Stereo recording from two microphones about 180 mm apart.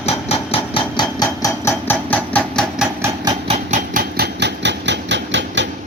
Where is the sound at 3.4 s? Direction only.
35° right (ahead or behind).